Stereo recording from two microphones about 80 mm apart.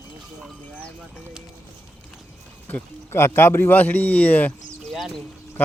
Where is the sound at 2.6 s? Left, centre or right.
Left.